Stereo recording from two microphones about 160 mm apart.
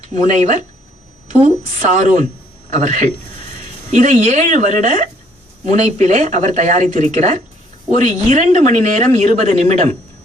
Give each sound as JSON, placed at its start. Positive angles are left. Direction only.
{"t": 0.1, "sound": "a man's voice", "side_deg": -50}